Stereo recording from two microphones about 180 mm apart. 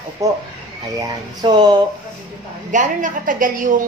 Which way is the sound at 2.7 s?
45° right (ahead or behind).